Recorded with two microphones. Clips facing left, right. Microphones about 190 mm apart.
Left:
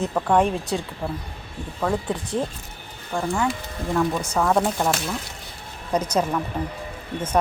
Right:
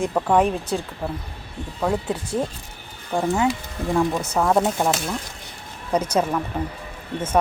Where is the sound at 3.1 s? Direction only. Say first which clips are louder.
Right 3 dB; 20° right (ahead or behind).